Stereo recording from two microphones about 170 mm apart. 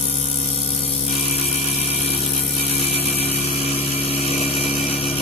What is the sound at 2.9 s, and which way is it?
Vehicle, 35° left (ahead or behind).